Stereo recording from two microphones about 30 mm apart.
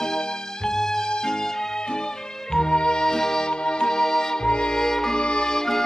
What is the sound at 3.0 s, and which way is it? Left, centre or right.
Music, centre.